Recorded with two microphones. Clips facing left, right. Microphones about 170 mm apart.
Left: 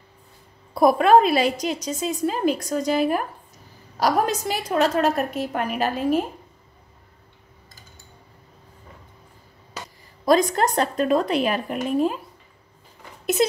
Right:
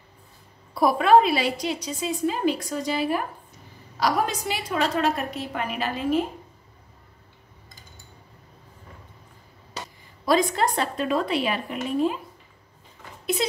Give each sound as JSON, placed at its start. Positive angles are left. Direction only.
{"t": 0.7, "sound": "a woman's voice", "side_deg": 45}
{"t": 10.2, "sound": "a woman's voice", "side_deg": 45}